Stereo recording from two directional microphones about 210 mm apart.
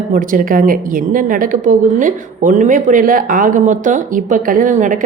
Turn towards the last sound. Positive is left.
turn(degrees=-40)  # may be behind; listen again after turning